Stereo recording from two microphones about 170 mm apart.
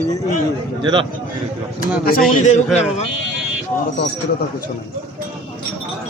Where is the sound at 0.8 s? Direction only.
30° right (ahead or behind).